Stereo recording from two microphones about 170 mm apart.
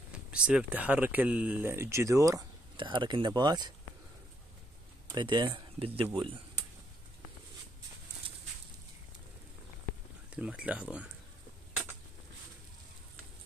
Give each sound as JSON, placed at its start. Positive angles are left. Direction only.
{"t": 0.1, "sound": "speech", "side_deg": -5}
{"t": 5.1, "sound": "speech", "side_deg": -25}
{"t": 10.3, "sound": "speech", "side_deg": -5}